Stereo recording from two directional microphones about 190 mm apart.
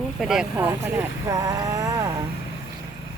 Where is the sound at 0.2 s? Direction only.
Centre (ahead or behind).